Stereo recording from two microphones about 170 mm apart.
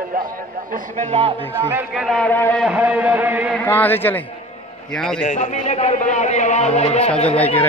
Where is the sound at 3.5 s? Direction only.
10° left (ahead or behind).